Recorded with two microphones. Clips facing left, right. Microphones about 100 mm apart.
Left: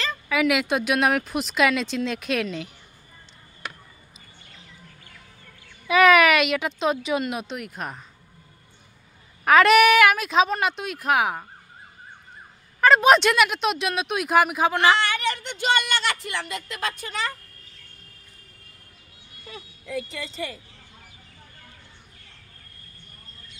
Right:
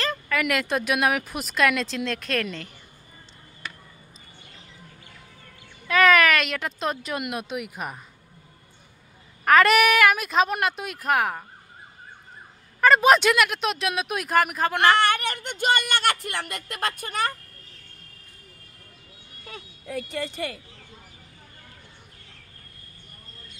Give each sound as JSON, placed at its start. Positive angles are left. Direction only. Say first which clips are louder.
{"t": 0.3, "sound": "a woman's voice", "louder": "left 4 dB", "side_deg": 5}
{"t": 5.9, "sound": "a woman's voice", "louder": "left 2 dB", "side_deg": 10}
{"t": 9.4, "sound": "a woman's voice", "louder": "left 2 dB", "side_deg": 0}
{"t": 12.8, "sound": "a woman's voice", "louder": "left 1 dB", "side_deg": 0}
{"t": 15.0, "sound": "speech", "louder": "right 2 dB", "side_deg": -55}
{"t": 19.5, "sound": "speech", "louder": "left 1 dB", "side_deg": -50}